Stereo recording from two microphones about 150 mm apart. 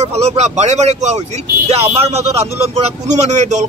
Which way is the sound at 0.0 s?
45° right (ahead or behind).